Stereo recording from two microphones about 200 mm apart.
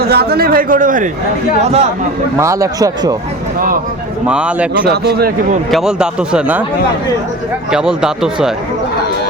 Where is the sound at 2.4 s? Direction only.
15° right (ahead or behind).